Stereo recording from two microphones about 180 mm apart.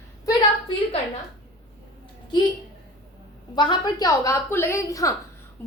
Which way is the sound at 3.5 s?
25° left (ahead or behind).